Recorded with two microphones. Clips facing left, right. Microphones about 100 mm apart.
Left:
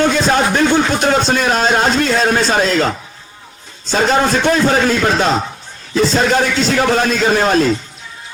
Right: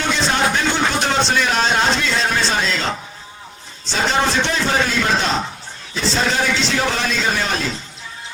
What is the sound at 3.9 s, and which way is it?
A man's voice, 45° left (ahead or behind).